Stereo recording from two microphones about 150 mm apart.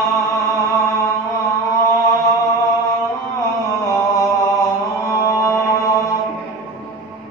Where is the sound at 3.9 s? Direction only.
20° left (ahead or behind).